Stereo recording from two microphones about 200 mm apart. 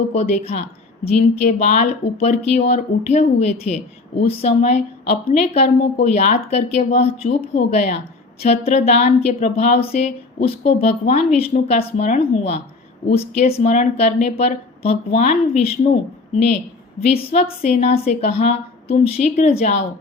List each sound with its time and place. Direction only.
0.1 s a woman's voice: 30° left (ahead or behind)